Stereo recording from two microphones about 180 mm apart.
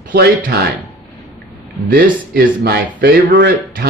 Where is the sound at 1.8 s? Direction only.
55° right (ahead or behind).